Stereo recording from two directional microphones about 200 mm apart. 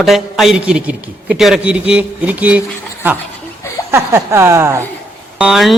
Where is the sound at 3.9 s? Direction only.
15° right (ahead or behind).